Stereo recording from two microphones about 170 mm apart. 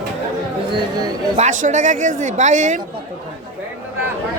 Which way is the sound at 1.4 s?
45° right (ahead or behind).